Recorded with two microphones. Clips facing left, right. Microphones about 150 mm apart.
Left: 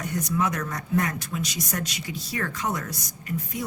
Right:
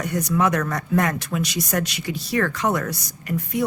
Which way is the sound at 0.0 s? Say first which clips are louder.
Right 5 dB; 75° right (ahead or behind).